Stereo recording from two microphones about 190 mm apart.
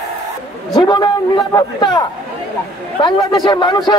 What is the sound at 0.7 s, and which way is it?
A man's voice, 25° left (ahead or behind).